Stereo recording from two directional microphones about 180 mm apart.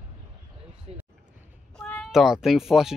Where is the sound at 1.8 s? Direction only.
5° left (ahead or behind).